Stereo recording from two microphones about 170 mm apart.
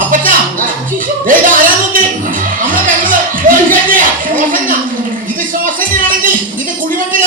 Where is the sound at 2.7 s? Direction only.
55° right (ahead or behind).